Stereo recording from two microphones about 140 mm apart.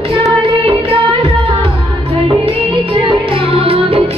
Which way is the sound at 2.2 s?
35° right (ahead or behind).